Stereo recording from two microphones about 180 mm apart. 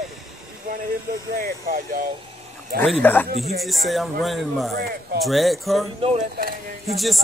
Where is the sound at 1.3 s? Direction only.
55° right (ahead or behind).